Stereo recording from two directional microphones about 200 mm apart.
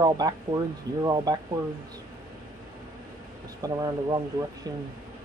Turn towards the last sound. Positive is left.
turn(degrees=-20)  # may be behind; listen again after turning